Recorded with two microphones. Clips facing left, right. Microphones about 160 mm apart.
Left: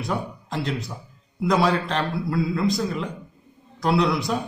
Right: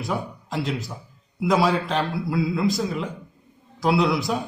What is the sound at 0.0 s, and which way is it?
A man's voice, centre (ahead or behind).